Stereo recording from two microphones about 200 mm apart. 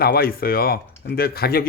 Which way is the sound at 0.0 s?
50° left (ahead or behind).